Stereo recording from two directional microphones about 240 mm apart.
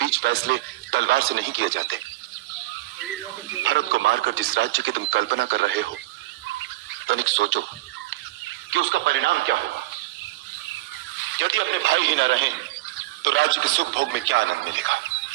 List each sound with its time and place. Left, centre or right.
0.0 s speech: right
3.6 s speech: right
7.1 s speech: right
8.7 s speech: right
11.3 s speech: right